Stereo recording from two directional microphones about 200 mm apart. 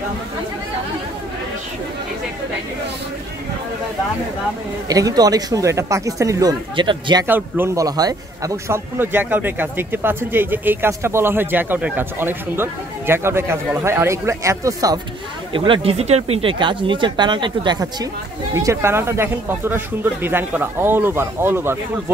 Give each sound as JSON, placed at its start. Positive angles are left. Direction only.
{"t": 4.8, "sound": "a man's voice", "side_deg": -20}
{"t": 7.2, "sound": "a man's voice", "side_deg": -10}